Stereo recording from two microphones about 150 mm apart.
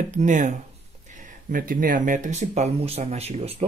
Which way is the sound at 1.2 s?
65° right (ahead or behind).